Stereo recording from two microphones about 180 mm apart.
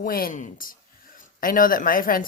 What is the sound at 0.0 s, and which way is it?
Speech, 50° left (ahead or behind).